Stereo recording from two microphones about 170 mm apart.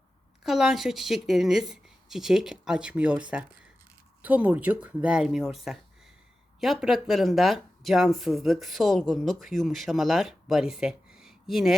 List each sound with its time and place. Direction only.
0.4 s speech: centre (ahead or behind)